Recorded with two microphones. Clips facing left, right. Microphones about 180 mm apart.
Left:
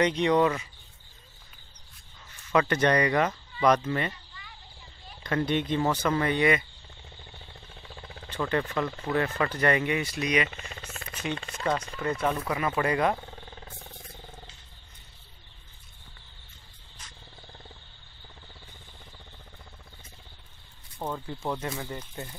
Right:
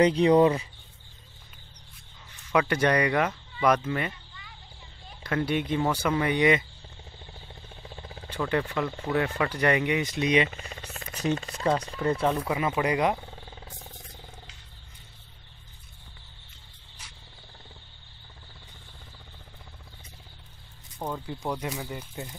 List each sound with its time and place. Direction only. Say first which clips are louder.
0.0 s speech: right 4 dB; 30° right (ahead or behind)
2.7 s speech: even; 10° right (ahead or behind)
5.2 s speech: even; 5° right (ahead or behind)
8.3 s speech: right 1 dB; 10° right (ahead or behind); by 12.3 s 30° right (ahead or behind)
12.3 s speech: right 2 dB; 20° right (ahead or behind)
17.0 s cricket: even; 10° right (ahead or behind)
21.0 s snake: even; 5° right (ahead or behind)
21.5 s speech: even; 15° right (ahead or behind)